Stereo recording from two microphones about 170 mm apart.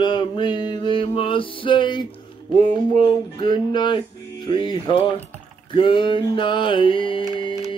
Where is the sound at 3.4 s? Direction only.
25° left (ahead or behind).